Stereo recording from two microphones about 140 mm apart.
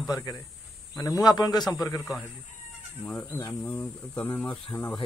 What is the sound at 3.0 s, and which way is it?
Speech, 10° left (ahead or behind).